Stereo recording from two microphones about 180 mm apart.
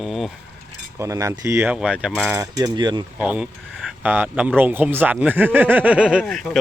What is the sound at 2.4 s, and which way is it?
Cutlery, 20° right (ahead or behind).